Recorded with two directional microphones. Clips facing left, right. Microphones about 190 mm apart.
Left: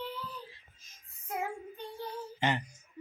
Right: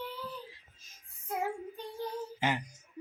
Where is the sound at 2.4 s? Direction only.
10° right (ahead or behind).